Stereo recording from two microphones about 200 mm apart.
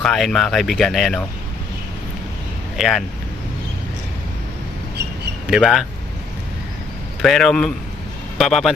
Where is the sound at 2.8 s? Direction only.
Centre (ahead or behind).